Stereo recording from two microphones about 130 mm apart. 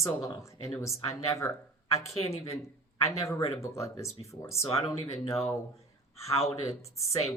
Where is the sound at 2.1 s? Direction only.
55° left (ahead or behind).